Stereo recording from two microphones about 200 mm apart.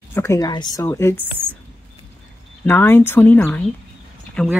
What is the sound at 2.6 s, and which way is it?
Speech, 10° left (ahead or behind).